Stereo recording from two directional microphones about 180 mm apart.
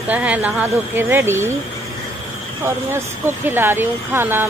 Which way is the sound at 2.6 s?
15° right (ahead or behind).